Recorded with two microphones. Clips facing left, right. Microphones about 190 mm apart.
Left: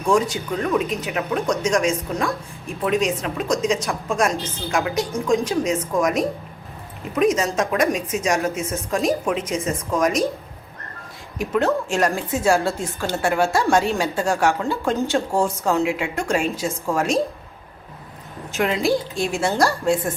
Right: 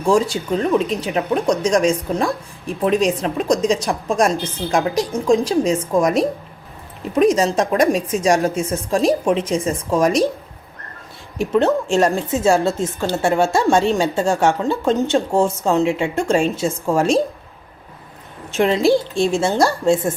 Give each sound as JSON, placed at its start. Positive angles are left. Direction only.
{"t": 0.0, "sound": "speech", "side_deg": -30}
{"t": 11.3, "sound": "a woman's voice", "side_deg": -25}
{"t": 18.5, "sound": "a woman's voice", "side_deg": -30}